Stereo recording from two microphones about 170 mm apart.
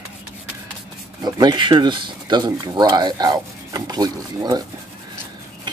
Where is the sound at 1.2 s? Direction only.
25° right (ahead or behind).